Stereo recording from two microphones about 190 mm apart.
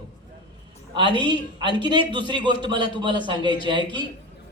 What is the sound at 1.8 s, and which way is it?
Speech, 25° right (ahead or behind).